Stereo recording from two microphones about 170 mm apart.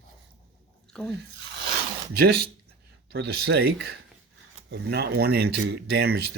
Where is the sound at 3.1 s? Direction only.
75° right (ahead or behind).